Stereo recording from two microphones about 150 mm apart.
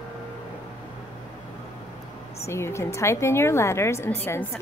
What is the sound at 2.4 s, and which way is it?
A woman's voice, 20° left (ahead or behind).